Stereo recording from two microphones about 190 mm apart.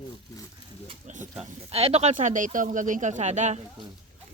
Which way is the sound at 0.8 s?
40° right (ahead or behind).